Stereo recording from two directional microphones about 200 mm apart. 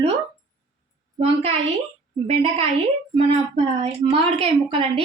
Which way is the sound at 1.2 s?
30° right (ahead or behind).